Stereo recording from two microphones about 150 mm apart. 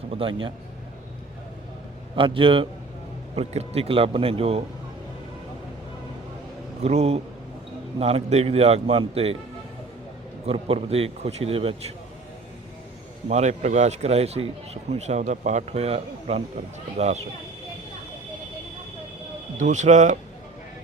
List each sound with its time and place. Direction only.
0.1 s speech: 35° right (ahead or behind)
2.1 s speech: 35° right (ahead or behind)
6.8 s speech: 45° right (ahead or behind)
10.4 s speech: 40° right (ahead or behind)
13.2 s speech: 50° right (ahead or behind)
19.5 s speech: 50° right (ahead or behind)